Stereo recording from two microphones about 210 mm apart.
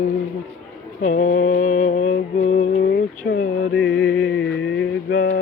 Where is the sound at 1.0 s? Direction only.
40° left (ahead or behind).